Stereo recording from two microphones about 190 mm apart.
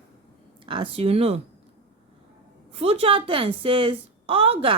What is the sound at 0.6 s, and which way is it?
Speech, 25° right (ahead or behind).